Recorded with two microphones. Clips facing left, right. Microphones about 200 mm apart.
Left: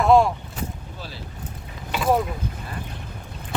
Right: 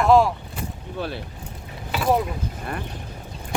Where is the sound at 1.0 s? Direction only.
60° right (ahead or behind).